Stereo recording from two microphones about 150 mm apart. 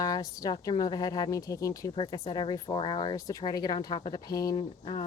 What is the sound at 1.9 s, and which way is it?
Speech, 30° left (ahead or behind).